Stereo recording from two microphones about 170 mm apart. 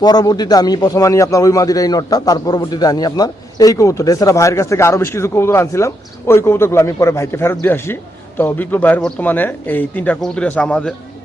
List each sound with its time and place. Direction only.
0.0 s speech: 25° left (ahead or behind); by 10.9 s 5° left (ahead or behind)